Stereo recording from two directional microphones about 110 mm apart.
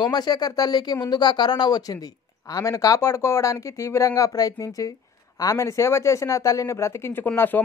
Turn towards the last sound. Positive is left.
turn(degrees=20)  # may be behind; listen again after turning